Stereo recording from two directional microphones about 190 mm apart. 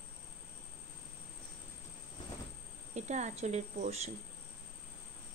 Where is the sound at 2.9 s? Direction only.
35° right (ahead or behind).